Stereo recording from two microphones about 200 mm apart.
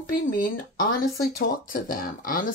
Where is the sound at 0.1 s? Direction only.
45° left (ahead or behind).